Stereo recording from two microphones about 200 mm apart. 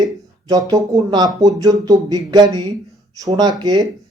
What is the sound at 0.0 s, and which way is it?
Speech, 20° right (ahead or behind).